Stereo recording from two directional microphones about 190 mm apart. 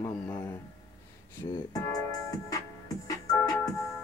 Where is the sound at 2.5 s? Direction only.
20° left (ahead or behind).